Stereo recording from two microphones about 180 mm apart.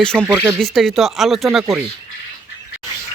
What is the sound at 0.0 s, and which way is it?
Speech, 5° left (ahead or behind).